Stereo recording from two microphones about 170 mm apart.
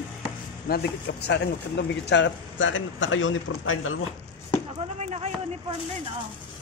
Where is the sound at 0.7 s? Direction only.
75° left (ahead or behind); by 3.3 s 90° left.